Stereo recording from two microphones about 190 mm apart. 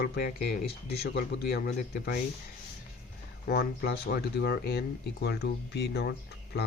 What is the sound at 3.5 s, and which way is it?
Speech, 55° left (ahead or behind).